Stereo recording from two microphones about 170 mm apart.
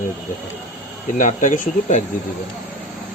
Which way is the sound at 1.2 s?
50° left (ahead or behind).